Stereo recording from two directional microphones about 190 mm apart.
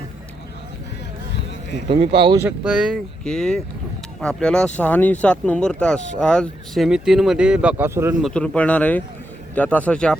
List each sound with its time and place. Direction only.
1.9 s speech: 25° right (ahead or behind)
2.4 s speech: 5° right (ahead or behind)
8.2 s speech: 5° left (ahead or behind)